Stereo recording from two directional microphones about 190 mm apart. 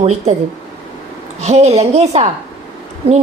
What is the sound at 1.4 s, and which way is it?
Speech, 35° right (ahead or behind).